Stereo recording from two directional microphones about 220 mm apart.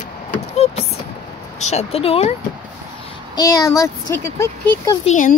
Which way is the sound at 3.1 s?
15° left (ahead or behind).